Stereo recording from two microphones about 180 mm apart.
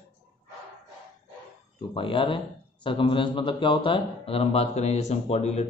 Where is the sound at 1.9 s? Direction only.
30° left (ahead or behind).